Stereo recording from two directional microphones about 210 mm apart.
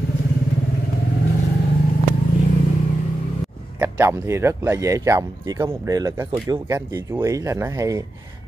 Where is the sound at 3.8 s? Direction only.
10° right (ahead or behind).